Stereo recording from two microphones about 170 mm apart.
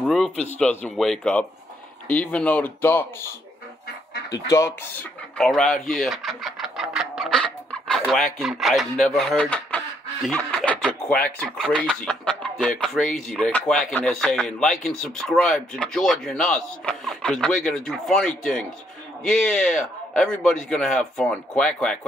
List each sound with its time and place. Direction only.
0.0 s speech: centre (ahead or behind)
4.3 s speech: 20° left (ahead or behind)
5.4 s speech: centre (ahead or behind)